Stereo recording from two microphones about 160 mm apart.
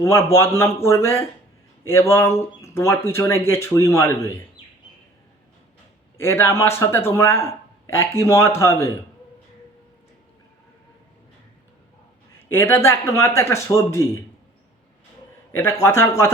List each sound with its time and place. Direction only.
0.3 s a man's voice: 15° left (ahead or behind)
6.1 s a man's voice: 15° left (ahead or behind)
12.4 s a man's voice: 15° left (ahead or behind)
15.5 s a man's voice: 15° left (ahead or behind)